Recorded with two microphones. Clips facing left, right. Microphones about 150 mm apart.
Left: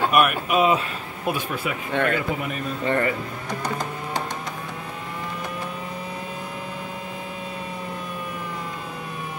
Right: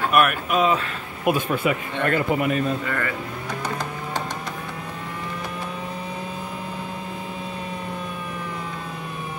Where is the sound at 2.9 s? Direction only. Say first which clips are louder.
Left 5 dB; 25° left (ahead or behind).